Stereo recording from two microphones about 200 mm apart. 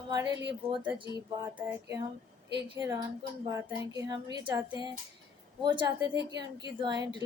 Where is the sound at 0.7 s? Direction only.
25° right (ahead or behind).